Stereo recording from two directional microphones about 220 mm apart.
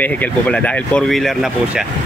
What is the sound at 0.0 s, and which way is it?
Speech, 5° left (ahead or behind).